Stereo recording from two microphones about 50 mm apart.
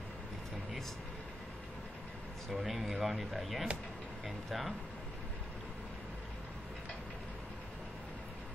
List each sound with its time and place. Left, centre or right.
2.5 s speech: centre